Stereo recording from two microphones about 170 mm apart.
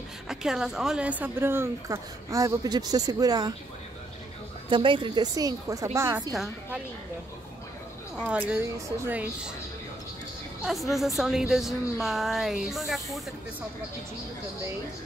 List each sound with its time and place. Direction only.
0.3 s a woman's voice: 5° right (ahead or behind); by 3.5 s 20° right (ahead or behind)
4.6 s a woman's voice: 30° right (ahead or behind)
6.3 s a woman's voice: centre (ahead or behind)
8.2 s a woman's voice: 5° right (ahead or behind)
10.6 s a woman's voice: centre (ahead or behind)